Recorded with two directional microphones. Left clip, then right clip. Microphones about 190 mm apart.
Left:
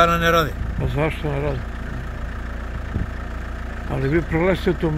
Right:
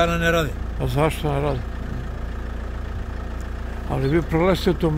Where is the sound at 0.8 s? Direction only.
20° right (ahead or behind).